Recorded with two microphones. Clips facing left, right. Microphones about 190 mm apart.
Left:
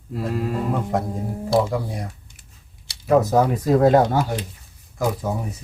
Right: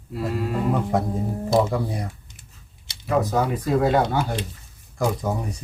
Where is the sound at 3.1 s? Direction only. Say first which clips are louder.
Left 5 dB; 40° left (ahead or behind).